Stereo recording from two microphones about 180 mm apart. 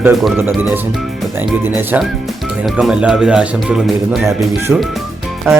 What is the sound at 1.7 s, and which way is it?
Speech, 10° right (ahead or behind).